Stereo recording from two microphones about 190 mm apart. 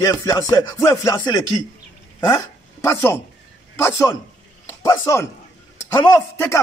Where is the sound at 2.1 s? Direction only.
15° left (ahead or behind).